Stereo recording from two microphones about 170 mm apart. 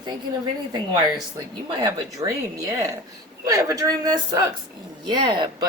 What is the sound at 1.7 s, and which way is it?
Speech, 20° right (ahead or behind).